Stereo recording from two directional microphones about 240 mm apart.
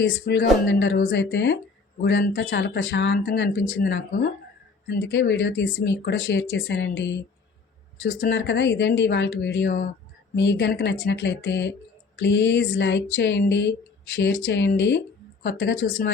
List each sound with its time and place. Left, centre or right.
0.0 s speech: left